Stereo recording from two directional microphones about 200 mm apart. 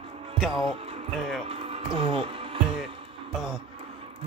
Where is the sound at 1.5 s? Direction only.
30° right (ahead or behind).